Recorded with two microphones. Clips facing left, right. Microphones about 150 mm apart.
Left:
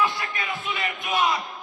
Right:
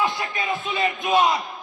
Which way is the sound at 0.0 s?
25° right (ahead or behind).